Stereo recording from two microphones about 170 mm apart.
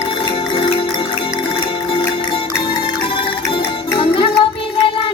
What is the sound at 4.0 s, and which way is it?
Music, 30° left (ahead or behind).